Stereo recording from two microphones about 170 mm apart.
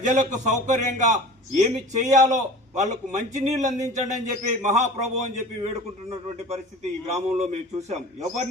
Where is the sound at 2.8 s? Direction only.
45° right (ahead or behind).